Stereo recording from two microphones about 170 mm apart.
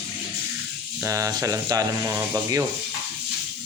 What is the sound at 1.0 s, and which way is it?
Speech, 20° right (ahead or behind).